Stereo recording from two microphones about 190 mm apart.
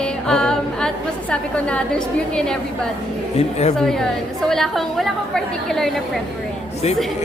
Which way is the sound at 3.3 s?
35° left (ahead or behind).